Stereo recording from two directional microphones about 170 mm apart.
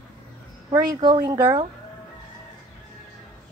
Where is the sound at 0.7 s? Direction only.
20° right (ahead or behind).